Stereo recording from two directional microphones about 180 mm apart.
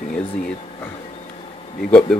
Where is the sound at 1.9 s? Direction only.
5° left (ahead or behind).